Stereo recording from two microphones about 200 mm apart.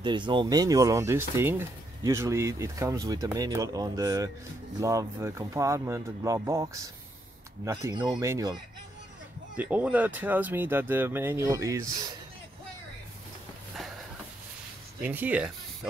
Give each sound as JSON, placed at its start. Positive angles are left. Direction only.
{"t": 0.0, "sound": "speech", "side_deg": -25}
{"t": 9.6, "sound": "speech", "side_deg": -10}
{"t": 15.0, "sound": "speech", "side_deg": -10}